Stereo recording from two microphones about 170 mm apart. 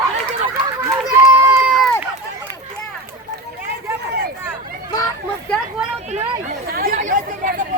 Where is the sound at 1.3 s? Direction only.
15° right (ahead or behind).